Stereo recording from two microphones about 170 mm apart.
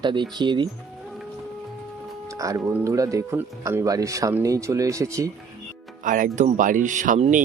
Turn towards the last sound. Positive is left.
turn(degrees=-45)  # may be behind; listen again after turning